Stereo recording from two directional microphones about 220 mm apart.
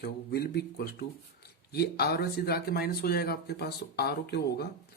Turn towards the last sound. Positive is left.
turn(degrees=45)  # may be behind; listen again after turning